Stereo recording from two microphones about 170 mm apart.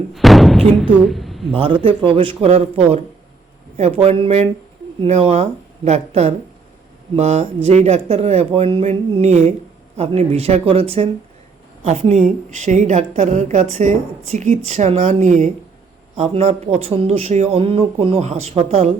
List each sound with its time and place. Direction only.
0.1 s speech: centre (ahead or behind)
1.5 s speech: 30° right (ahead or behind)
4.0 s a woman's voice: 35° right (ahead or behind)